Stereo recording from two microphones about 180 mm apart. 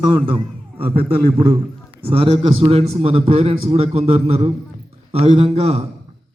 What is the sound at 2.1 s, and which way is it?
A man's voice, 35° right (ahead or behind).